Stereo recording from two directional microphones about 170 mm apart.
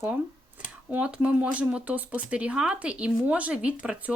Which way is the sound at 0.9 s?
10° right (ahead or behind).